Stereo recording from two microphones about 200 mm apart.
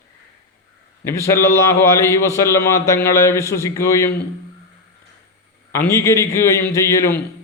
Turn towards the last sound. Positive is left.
turn(degrees=15)  # may be behind; listen again after turning